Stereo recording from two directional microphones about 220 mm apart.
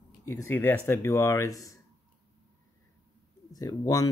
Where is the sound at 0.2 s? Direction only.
15° left (ahead or behind).